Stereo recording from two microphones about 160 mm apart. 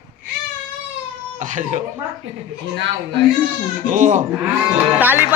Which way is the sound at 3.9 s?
50° right (ahead or behind).